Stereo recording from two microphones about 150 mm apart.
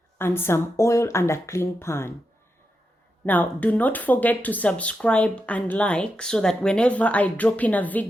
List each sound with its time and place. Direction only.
0.2 s speech: 15° left (ahead or behind)
3.2 s speech: 10° left (ahead or behind)